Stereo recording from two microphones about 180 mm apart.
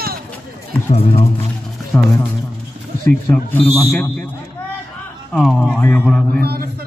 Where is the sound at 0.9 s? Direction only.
35° left (ahead or behind).